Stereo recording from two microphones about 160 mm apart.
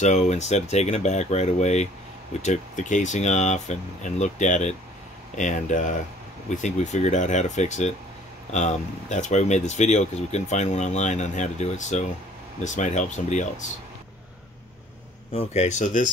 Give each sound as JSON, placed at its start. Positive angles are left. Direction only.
{"t": 0.0, "sound": "speech", "side_deg": 45}
{"t": 15.3, "sound": "speech", "side_deg": 45}